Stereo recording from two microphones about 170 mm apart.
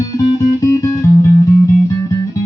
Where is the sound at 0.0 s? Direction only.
20° left (ahead or behind).